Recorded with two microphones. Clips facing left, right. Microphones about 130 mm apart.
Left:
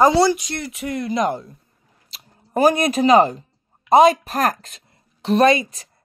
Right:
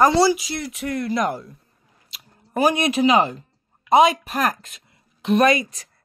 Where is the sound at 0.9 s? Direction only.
20° left (ahead or behind).